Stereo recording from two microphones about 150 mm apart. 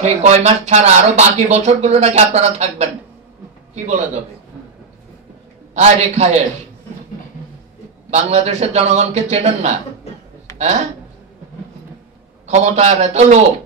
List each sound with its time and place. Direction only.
0.0 s speech: 45° right (ahead or behind)
5.8 s speech: 45° right (ahead or behind)
8.1 s speech: 45° right (ahead or behind)
12.4 s speech: 45° right (ahead or behind)